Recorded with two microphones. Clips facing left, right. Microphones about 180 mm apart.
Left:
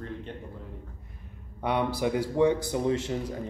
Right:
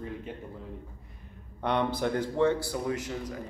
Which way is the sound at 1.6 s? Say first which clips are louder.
Left 1 dB; 10° left (ahead or behind).